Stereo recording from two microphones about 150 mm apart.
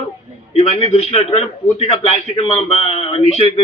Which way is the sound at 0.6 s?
40° left (ahead or behind).